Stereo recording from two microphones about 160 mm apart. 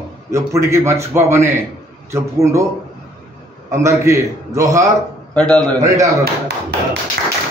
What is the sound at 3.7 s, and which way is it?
A man's voice, 20° right (ahead or behind).